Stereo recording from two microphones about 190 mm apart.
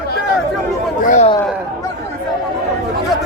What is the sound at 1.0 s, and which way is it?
Speech, 40° left (ahead or behind).